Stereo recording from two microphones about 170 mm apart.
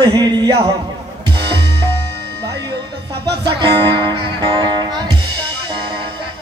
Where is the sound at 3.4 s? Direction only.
25° right (ahead or behind).